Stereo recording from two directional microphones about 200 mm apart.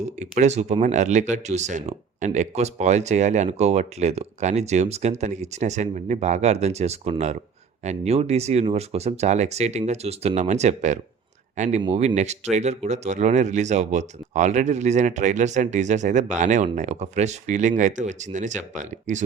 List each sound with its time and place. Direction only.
0.2 s speech: 35° right (ahead or behind)